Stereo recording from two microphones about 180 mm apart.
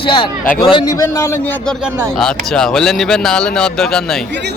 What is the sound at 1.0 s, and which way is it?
Speech, 15° left (ahead or behind).